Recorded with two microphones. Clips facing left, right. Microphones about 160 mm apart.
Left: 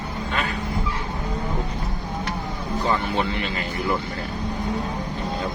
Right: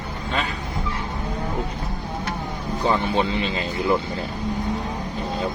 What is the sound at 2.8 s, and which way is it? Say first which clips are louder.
Speech: right 3 dB; 20° right (ahead or behind).